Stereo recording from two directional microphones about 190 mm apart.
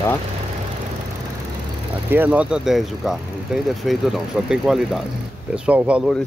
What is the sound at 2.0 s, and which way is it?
Speech, 10° right (ahead or behind).